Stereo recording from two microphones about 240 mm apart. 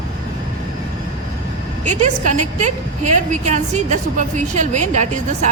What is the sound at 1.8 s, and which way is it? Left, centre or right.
A woman's voice, right.